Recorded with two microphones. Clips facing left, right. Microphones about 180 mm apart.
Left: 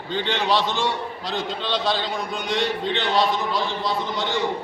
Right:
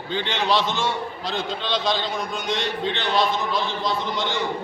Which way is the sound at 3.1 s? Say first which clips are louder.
Even; 10° left (ahead or behind).